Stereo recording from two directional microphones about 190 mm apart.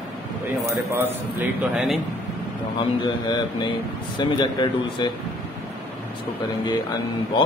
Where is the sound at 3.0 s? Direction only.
25° left (ahead or behind).